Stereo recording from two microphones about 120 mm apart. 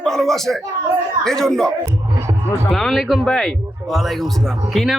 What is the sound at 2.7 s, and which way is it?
Speech, centre (ahead or behind).